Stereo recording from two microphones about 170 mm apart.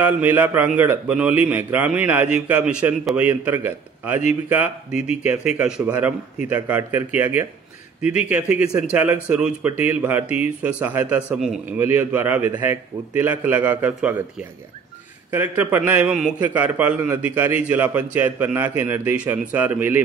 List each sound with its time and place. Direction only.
0.0 s a man's voice: 10° right (ahead or behind)
15.3 s a man's voice: 10° right (ahead or behind)